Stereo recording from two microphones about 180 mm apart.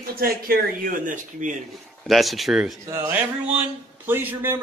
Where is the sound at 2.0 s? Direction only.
Centre (ahead or behind).